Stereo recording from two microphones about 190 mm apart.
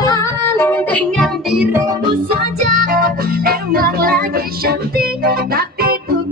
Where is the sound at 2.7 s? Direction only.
45° right (ahead or behind).